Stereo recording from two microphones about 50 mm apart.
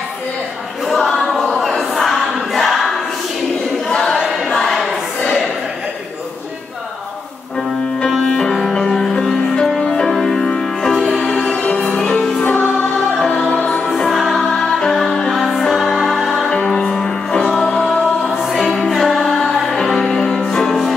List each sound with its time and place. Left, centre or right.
0.8 s choir: centre
4.2 s choir: centre
8.3 s music: centre
11.6 s music: left
12.2 s music: centre
12.4 s music: left
13.8 s music: centre
16.4 s music: centre